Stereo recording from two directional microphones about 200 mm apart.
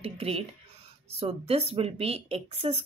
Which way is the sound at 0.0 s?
30° right (ahead or behind).